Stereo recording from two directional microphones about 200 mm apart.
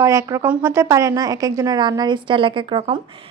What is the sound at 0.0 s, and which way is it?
A woman's voice, 15° right (ahead or behind).